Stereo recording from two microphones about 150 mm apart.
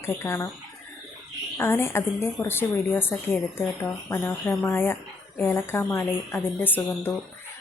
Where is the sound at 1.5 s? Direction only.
15° left (ahead or behind).